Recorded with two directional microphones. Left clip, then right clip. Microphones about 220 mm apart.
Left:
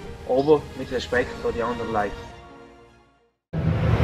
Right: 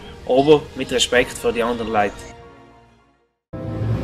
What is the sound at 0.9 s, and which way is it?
Speech, 25° right (ahead or behind).